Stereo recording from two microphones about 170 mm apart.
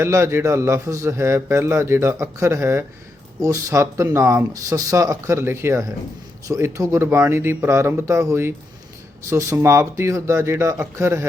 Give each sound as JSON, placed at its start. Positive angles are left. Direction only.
{"t": 0.0, "sound": "a man's voice", "side_deg": -15}